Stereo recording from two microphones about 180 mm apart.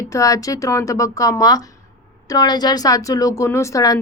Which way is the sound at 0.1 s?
20° left (ahead or behind).